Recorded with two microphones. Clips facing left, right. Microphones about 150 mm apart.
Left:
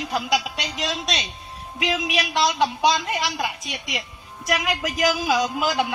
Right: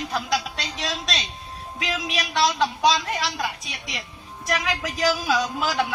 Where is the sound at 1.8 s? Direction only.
15° left (ahead or behind).